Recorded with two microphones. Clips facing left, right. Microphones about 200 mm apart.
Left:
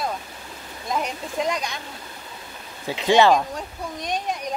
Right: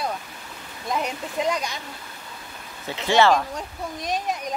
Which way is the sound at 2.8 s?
15° left (ahead or behind).